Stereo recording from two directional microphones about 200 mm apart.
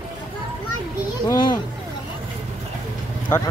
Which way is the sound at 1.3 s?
20° left (ahead or behind).